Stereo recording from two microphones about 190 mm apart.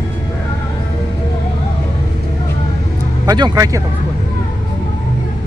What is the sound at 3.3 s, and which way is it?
Speech, 20° right (ahead or behind).